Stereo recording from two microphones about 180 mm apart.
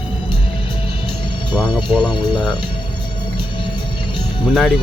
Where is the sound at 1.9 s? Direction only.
25° left (ahead or behind).